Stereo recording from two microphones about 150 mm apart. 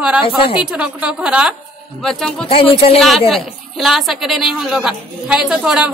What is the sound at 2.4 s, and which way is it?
Speech, 40° left (ahead or behind).